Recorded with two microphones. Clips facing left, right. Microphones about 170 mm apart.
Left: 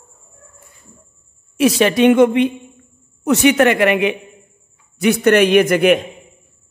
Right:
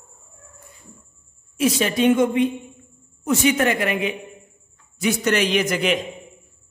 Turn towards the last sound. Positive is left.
turn(degrees=55)  # may be behind; listen again after turning